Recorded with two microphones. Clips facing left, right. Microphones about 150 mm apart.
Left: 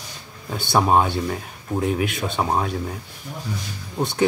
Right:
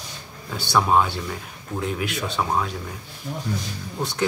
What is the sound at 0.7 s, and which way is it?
Speech, 30° left (ahead or behind).